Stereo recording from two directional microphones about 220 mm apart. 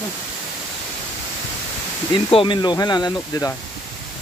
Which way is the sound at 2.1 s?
20° left (ahead or behind).